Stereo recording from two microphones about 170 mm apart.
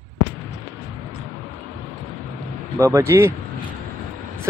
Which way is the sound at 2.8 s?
15° right (ahead or behind).